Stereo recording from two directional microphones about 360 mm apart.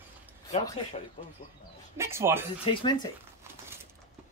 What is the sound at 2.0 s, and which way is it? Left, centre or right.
Speech, centre.